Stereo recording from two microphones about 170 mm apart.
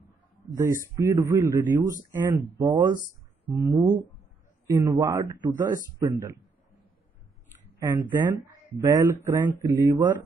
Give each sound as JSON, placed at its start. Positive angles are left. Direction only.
{"t": 0.6, "sound": "speech", "side_deg": -15}
{"t": 2.6, "sound": "speech", "side_deg": -25}
{"t": 7.8, "sound": "speech", "side_deg": -15}